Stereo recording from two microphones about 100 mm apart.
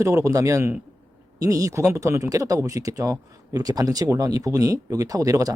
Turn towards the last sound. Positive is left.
turn(degrees=-35)  # may be behind; listen again after turning